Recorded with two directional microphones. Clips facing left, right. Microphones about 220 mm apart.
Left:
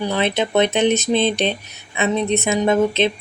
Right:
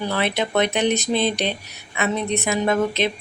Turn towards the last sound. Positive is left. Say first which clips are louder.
# left 4 dB
turn(degrees=25)  # may be behind; listen again after turning